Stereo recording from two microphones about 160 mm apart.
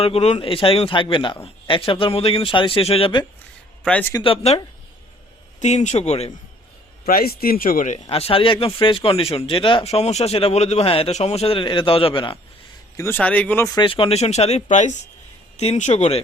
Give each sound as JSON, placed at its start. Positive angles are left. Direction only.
{"t": 0.0, "sound": "speech", "side_deg": 40}
{"t": 7.1, "sound": "speech", "side_deg": 70}
{"t": 8.1, "sound": "speech", "side_deg": 35}
{"t": 13.0, "sound": "speech", "side_deg": 10}
{"t": 13.7, "sound": "speech", "side_deg": 35}